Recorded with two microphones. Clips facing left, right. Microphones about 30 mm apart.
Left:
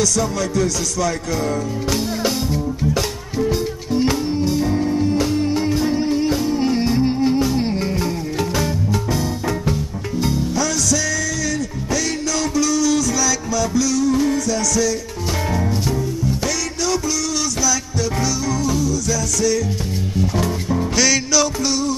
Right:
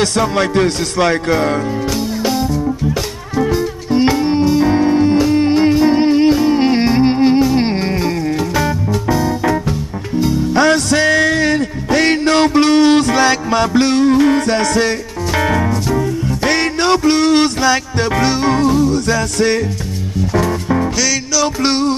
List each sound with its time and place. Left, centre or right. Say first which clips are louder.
0.0 s music: right 5 dB; right
4.2 s music: right 7 dB; right
10.5 s music: right 8 dB; right
21.0 s music: right 1 dB; centre
21.6 s music: right 6 dB; right